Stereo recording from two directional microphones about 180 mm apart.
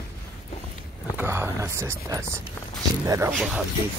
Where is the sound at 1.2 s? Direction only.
15° right (ahead or behind).